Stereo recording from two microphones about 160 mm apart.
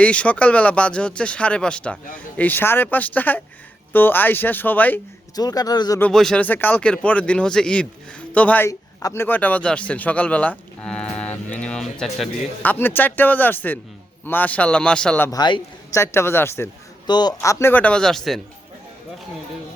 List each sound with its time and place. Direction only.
0.0 s speech: 10° left (ahead or behind)
5.4 s speech: 25° left (ahead or behind)
6.0 s speech: 5° left (ahead or behind)
12.6 s speech: 10° left (ahead or behind)
15.3 s a man's voice: 25° left (ahead or behind)
16.0 s speech: 15° left (ahead or behind)
17.1 s speech: 25° left (ahead or behind); by 18.3 s 5° left (ahead or behind)